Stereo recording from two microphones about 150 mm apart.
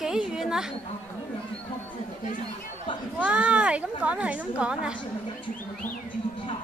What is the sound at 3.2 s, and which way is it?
Speech, 10° right (ahead or behind).